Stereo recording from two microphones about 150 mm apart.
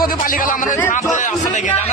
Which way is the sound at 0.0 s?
70° left (ahead or behind).